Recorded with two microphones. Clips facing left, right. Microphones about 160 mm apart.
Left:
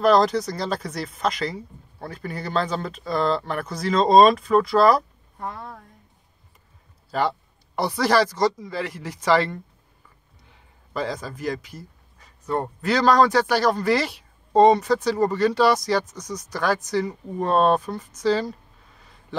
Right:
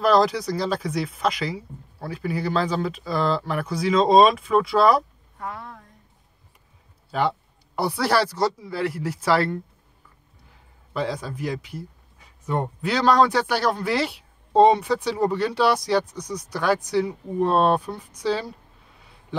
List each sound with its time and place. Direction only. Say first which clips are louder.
0.0 s speech: left 1 dB; 5° right (ahead or behind)
5.4 s a sound: left 1 dB; 35° left (ahead or behind)
7.1 s speech: even; centre (ahead or behind)
10.9 s speech: right 1 dB; centre (ahead or behind)